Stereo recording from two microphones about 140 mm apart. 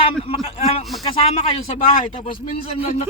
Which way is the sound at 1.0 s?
40° left (ahead or behind).